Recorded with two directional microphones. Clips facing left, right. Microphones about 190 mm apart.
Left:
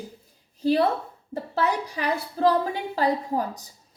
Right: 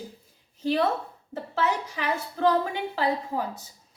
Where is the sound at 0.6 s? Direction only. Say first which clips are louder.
Left 3 dB; 35° left (ahead or behind).